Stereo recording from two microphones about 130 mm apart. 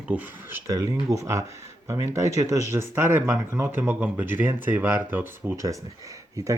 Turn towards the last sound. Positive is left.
turn(degrees=-25)  # may be behind; listen again after turning